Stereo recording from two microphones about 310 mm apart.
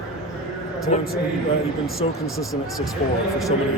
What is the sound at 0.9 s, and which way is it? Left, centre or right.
Speech, left.